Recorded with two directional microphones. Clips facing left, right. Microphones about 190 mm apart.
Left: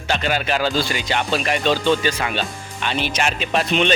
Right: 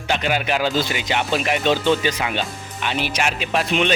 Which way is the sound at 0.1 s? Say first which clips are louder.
Even; 15° right (ahead or behind).